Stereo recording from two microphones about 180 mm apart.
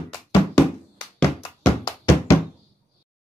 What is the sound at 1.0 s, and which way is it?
Hands, 30° left (ahead or behind).